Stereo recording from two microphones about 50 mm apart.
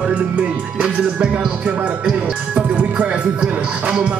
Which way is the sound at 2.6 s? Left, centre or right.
Right.